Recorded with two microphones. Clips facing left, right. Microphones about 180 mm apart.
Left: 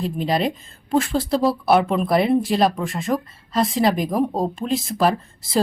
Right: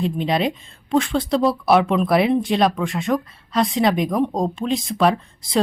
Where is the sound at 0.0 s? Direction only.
Centre (ahead or behind).